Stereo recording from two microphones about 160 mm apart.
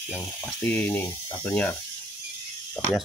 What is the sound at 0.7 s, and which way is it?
Speech, 10° left (ahead or behind).